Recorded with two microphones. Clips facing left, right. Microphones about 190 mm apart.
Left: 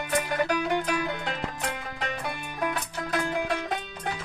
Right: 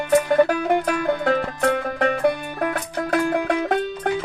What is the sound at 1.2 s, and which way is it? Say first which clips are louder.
Music: right 12 dB; 55° right (ahead or behind).